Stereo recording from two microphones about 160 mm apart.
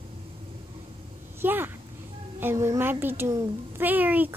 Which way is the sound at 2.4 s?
15° right (ahead or behind).